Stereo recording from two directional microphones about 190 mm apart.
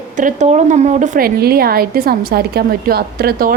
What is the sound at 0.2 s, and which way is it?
A woman's voice, 40° right (ahead or behind).